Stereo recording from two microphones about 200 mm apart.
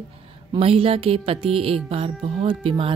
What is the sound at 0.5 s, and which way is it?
Speech, 30° right (ahead or behind).